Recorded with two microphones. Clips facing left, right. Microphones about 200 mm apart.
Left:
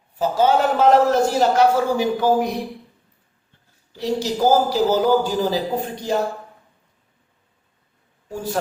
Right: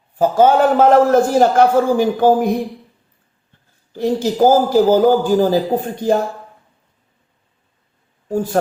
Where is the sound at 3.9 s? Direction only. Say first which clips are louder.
Right 6 dB; 50° right (ahead or behind).